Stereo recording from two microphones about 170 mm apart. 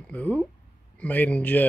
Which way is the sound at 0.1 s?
10° left (ahead or behind).